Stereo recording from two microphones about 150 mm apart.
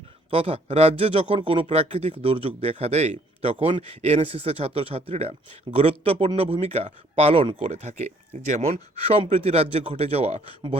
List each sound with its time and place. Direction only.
0.3 s speech: 40° right (ahead or behind)